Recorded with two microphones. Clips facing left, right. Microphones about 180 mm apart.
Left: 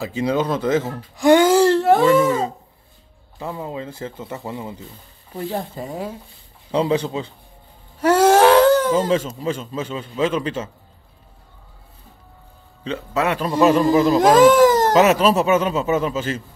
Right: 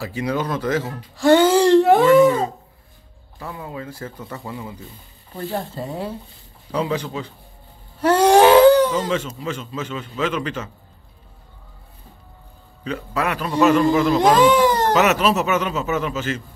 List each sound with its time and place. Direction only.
0.0 s speech: 20° left (ahead or behind); by 2.0 s centre (ahead or behind)
3.3 s speech: 25° left (ahead or behind)
5.5 s speech: 10° left (ahead or behind)
6.7 s speech: 30° left (ahead or behind)
8.0 s whimper: 5° left (ahead or behind)
8.9 s a man's voice: 35° left (ahead or behind)
12.8 s speech: 25° left (ahead or behind)
13.7 s a man's voice: 35° left (ahead or behind)
14.6 s baby cry: centre (ahead or behind)
14.9 s a man's voice: 35° left (ahead or behind)